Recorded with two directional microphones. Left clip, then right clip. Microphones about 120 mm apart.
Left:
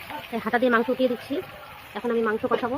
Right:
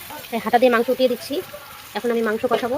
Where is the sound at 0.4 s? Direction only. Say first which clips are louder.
Right 6 dB; 40° right (ahead or behind).